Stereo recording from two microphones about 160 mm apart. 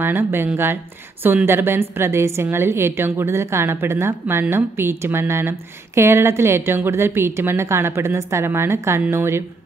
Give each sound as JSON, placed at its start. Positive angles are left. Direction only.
{"t": 0.0, "sound": "speech", "side_deg": -15}